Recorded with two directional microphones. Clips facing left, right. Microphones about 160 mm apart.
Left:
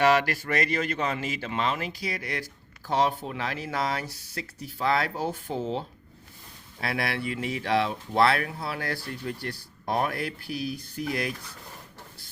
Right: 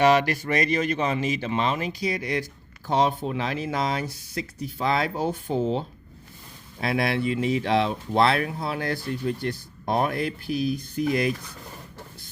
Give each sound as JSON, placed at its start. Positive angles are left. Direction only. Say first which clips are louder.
{"t": 0.0, "sound": "speech", "louder": "right 3 dB", "side_deg": -20}